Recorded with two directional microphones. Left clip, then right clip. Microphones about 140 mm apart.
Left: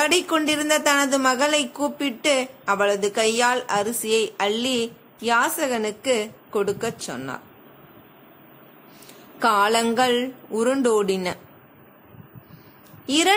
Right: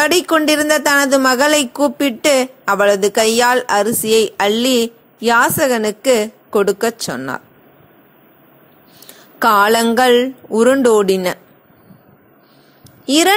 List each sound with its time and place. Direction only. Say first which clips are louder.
0.0 s a woman's voice: right 7 dB; 40° right (ahead or behind)
9.4 s a woman's voice: right 7 dB; 50° right (ahead or behind)
13.0 s speech: right 8 dB; 45° right (ahead or behind)